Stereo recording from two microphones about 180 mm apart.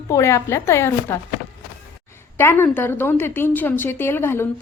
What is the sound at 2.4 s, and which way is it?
A woman's voice, 15° left (ahead or behind).